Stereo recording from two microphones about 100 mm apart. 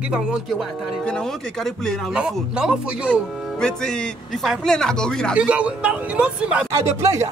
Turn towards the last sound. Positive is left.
turn(degrees=-25)  # may be behind; listen again after turning